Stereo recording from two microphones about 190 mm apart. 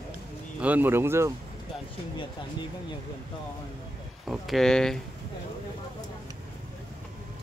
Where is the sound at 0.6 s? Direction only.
10° right (ahead or behind).